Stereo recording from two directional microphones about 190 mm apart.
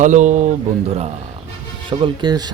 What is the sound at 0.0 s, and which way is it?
Speech, 40° right (ahead or behind).